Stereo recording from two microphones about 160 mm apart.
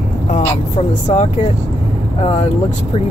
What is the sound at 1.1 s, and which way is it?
Speech, 40° left (ahead or behind).